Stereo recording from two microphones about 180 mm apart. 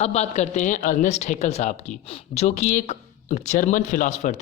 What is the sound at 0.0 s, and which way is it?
Speech, 40° left (ahead or behind).